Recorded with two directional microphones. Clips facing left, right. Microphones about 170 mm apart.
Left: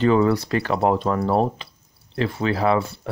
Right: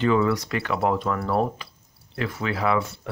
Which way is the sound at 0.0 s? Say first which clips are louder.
Left 3 dB; 35° left (ahead or behind).